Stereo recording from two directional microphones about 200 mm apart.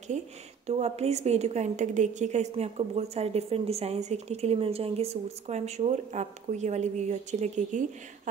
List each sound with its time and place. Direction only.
0.7 s a woman's voice: 35° right (ahead or behind)